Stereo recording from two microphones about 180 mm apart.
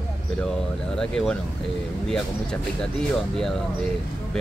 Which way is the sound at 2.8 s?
5° left (ahead or behind).